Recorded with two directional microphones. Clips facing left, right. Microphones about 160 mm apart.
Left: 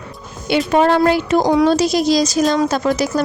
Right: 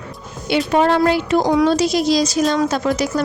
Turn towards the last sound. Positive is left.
turn(degrees=40)  # may be behind; listen again after turning